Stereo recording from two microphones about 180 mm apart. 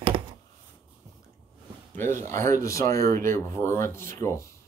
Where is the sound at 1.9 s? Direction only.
15° left (ahead or behind).